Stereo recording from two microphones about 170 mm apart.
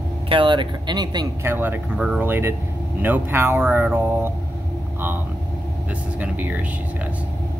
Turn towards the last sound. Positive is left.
turn(degrees=-10)  # may be behind; listen again after turning